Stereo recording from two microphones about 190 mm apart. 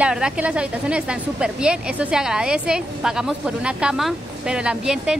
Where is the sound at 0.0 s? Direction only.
5° right (ahead or behind).